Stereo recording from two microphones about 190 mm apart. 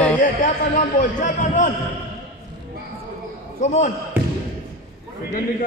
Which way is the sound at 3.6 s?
40° left (ahead or behind).